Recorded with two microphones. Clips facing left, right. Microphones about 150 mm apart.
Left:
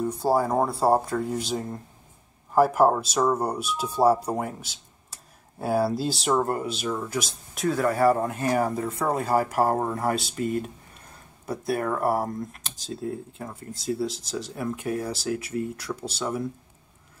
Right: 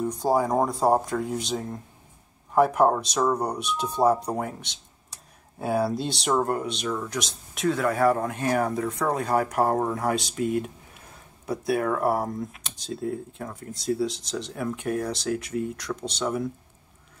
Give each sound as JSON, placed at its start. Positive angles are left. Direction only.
{"t": 0.0, "sound": "speech", "side_deg": 5}